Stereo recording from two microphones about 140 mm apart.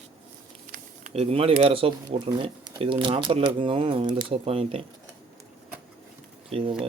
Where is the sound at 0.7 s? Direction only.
60° right (ahead or behind).